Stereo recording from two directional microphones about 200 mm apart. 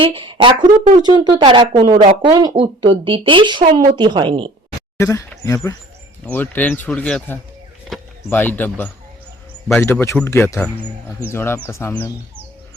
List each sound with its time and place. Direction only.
0.0 s speech: 25° right (ahead or behind)
4.9 s speech: 15° left (ahead or behind)